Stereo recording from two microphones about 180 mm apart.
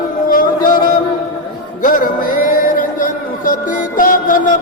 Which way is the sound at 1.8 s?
50° left (ahead or behind).